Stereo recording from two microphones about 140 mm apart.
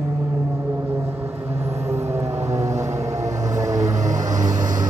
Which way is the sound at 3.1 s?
55° right (ahead or behind).